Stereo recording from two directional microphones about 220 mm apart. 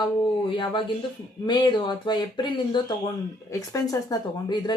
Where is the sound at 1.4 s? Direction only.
20° left (ahead or behind).